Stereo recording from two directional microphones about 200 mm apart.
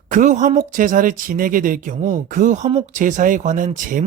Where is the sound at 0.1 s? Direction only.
40° right (ahead or behind).